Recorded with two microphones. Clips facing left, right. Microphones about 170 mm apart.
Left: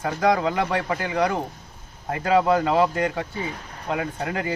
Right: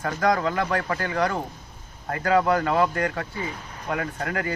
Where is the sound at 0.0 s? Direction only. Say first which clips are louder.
Left 2 dB; 20° left (ahead or behind).